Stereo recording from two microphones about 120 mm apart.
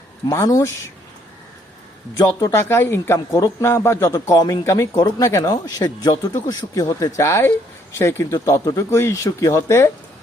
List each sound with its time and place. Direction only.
0.3 s speech: 30° left (ahead or behind)
2.1 s speech: 30° left (ahead or behind)